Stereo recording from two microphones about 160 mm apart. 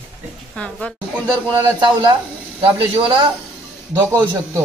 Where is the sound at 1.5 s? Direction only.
20° right (ahead or behind).